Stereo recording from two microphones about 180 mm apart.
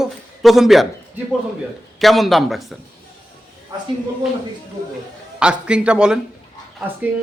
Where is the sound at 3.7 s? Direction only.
20° right (ahead or behind).